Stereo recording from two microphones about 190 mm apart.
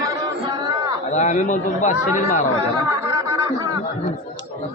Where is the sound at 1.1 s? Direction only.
35° left (ahead or behind).